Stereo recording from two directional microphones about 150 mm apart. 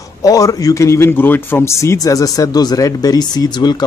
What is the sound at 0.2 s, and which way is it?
A man's voice, 25° left (ahead or behind).